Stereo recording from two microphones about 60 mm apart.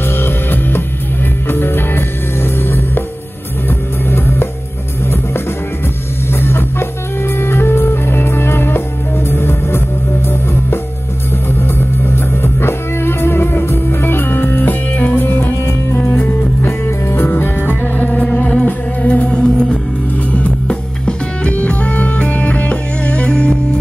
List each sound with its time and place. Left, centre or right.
0.2 s music: left
6.3 s music: left
12.4 s music: left
16.0 s music: left
16.6 s music: left; by 23.8 s centre